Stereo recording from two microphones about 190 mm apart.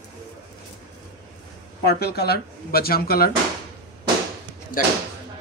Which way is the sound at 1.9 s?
55° left (ahead or behind).